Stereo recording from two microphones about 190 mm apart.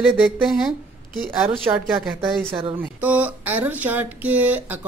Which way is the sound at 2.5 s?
25° right (ahead or behind).